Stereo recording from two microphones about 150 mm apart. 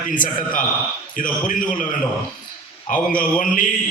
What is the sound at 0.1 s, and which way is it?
A man's voice, 65° left (ahead or behind).